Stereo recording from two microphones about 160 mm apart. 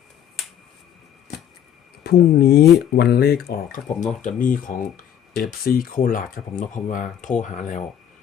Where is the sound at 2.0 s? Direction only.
90° left.